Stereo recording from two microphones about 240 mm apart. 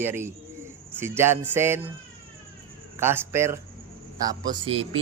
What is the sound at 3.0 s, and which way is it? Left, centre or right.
Speech, centre.